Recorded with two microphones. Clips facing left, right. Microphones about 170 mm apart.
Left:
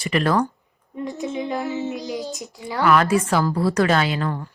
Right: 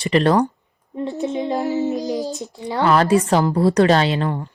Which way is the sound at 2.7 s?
25° right (ahead or behind).